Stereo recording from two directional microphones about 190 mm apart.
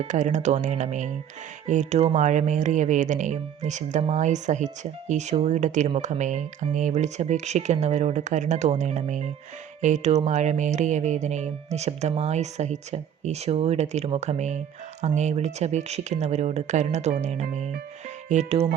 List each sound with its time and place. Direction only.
0.0 s speech: 40° right (ahead or behind)